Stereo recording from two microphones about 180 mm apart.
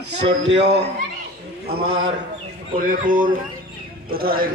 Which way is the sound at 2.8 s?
50° right (ahead or behind).